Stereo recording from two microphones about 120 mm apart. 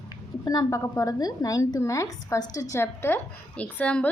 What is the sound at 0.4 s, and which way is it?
A woman's voice, 30° left (ahead or behind).